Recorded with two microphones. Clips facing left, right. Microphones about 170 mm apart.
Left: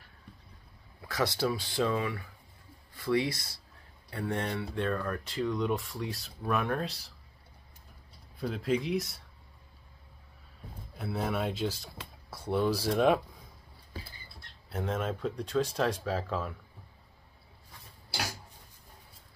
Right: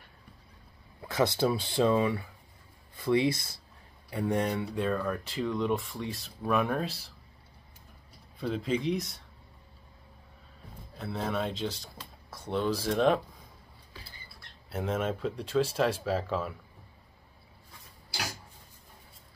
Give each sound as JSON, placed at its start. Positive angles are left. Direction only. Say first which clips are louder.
{"t": 1.0, "sound": "speech", "louder": "right 3 dB", "side_deg": -25}
{"t": 8.4, "sound": "speech", "louder": "even", "side_deg": 5}
{"t": 11.0, "sound": "speech", "louder": "even", "side_deg": 5}
{"t": 14.7, "sound": "speech", "louder": "right 2 dB", "side_deg": -5}